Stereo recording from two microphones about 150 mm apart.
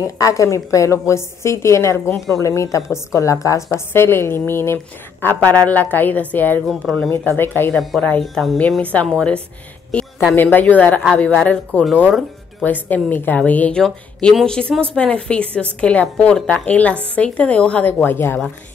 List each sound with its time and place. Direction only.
0.0 s a woman's voice: 20° left (ahead or behind); by 7.1 s centre (ahead or behind)
7.3 s a woman's voice: 15° left (ahead or behind)
7.7 s speech: centre (ahead or behind)
10.3 s a woman's voice: 10° left (ahead or behind)
12.6 s a woman's voice: 10° left (ahead or behind)